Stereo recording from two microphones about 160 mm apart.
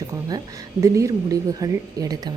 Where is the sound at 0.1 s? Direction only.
20° right (ahead or behind).